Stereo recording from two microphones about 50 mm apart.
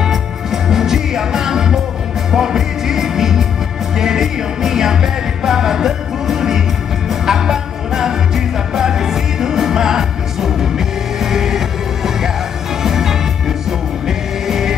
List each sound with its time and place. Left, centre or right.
0.0 s music: centre